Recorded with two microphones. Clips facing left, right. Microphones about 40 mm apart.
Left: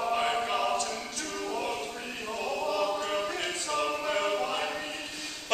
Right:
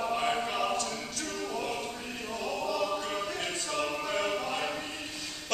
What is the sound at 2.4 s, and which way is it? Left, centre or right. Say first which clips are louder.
Choir: left 2 dB; centre.